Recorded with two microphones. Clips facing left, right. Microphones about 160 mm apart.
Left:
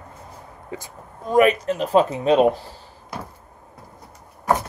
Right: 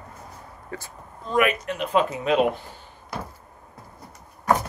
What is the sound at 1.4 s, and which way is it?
Speech, 35° left (ahead or behind).